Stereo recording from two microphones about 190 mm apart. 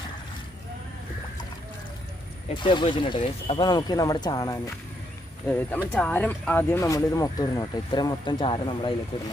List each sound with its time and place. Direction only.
2.6 s speech: 25° left (ahead or behind)